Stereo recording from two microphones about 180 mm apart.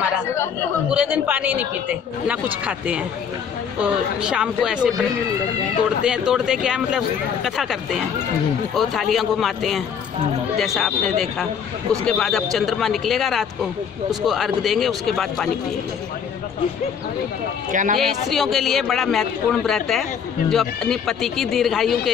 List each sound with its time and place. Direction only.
0.9 s a man's voice: 10° right (ahead or behind)
6.0 s a man's voice: 5° right (ahead or behind)
17.6 s speech: 45° right (ahead or behind)
17.9 s a man's voice: centre (ahead or behind)